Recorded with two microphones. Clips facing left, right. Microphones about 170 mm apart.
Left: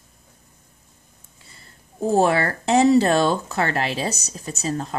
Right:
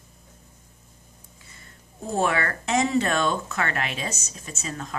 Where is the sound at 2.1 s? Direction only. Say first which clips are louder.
Left 6 dB; 35° left (ahead or behind).